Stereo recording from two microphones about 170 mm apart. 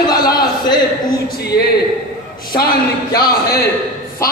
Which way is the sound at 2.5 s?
65° left (ahead or behind).